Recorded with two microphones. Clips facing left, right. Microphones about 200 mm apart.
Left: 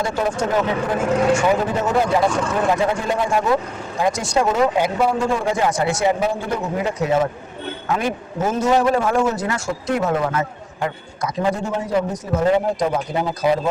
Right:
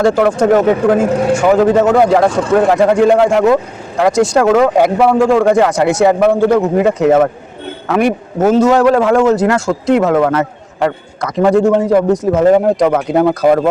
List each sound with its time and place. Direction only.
0.0 s speech: 70° right (ahead or behind); by 0.9 s 50° right (ahead or behind)
1.5 s speech: 75° right (ahead or behind); by 13.7 s 55° right (ahead or behind)